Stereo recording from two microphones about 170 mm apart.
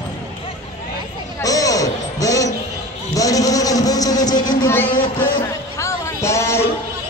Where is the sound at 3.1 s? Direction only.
20° left (ahead or behind).